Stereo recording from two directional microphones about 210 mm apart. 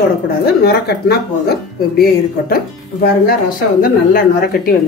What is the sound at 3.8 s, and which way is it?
Speech, 40° left (ahead or behind).